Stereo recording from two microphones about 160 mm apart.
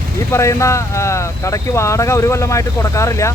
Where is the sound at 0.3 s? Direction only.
20° left (ahead or behind).